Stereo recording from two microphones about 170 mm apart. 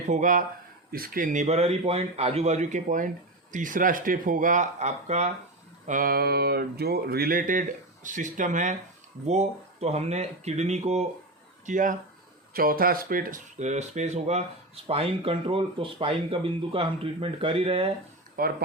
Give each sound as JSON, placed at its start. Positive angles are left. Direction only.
{"t": 0.1, "sound": "a man's voice", "side_deg": -50}
{"t": 0.9, "sound": "a man's voice", "side_deg": -60}
{"t": 5.8, "sound": "a man's voice", "side_deg": -50}
{"t": 18.4, "sound": "speech", "side_deg": -60}